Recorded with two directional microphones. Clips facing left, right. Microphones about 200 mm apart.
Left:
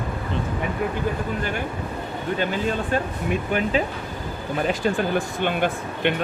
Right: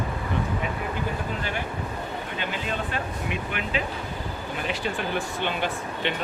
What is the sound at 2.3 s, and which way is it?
Speech, 40° left (ahead or behind).